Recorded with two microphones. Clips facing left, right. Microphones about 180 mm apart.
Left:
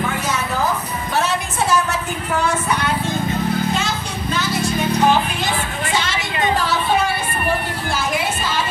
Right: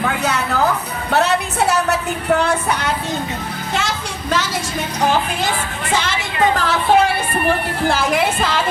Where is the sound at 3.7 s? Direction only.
85° right.